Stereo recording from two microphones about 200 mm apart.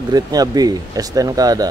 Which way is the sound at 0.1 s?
20° right (ahead or behind).